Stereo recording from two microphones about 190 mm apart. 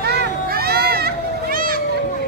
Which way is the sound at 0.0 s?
60° right (ahead or behind).